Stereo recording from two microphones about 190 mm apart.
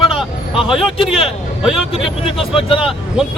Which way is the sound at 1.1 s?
Centre (ahead or behind).